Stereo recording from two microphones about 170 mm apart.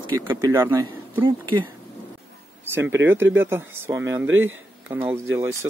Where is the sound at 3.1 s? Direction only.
10° right (ahead or behind).